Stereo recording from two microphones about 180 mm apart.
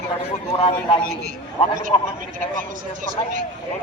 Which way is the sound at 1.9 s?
20° left (ahead or behind).